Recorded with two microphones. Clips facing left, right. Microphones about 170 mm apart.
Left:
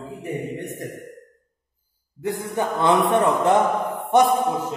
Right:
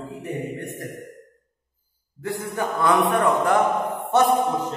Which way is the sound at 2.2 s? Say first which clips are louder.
Left 2 dB; 20° left (ahead or behind).